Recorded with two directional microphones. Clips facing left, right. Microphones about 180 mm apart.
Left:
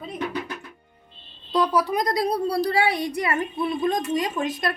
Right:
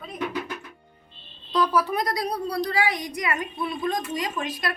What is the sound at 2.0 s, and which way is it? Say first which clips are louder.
A woman's voice: left 4 dB; 25° left (ahead or behind).